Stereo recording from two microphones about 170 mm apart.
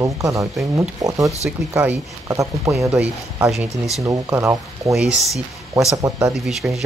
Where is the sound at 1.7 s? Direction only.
15° right (ahead or behind).